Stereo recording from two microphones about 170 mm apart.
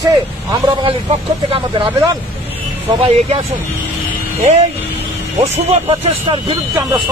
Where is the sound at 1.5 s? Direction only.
30° right (ahead or behind).